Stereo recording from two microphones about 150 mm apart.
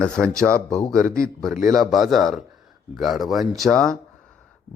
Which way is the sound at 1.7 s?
Centre (ahead or behind).